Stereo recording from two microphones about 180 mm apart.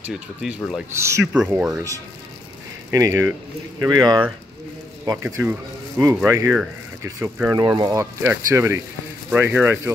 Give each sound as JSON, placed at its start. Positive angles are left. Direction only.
{"t": 0.0, "sound": "speech", "side_deg": -5}
{"t": 0.9, "sound": "speech", "side_deg": -15}
{"t": 2.9, "sound": "speech", "side_deg": -20}
{"t": 7.5, "sound": "speech", "side_deg": -20}